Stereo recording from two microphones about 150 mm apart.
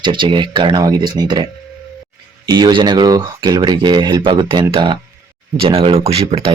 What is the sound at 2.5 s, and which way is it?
Speech, 25° right (ahead or behind).